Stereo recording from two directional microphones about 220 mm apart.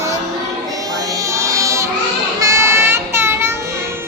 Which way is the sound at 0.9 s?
15° right (ahead or behind).